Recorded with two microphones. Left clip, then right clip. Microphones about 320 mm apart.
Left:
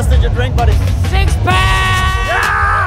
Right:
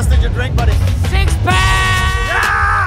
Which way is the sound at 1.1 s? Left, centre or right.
Centre.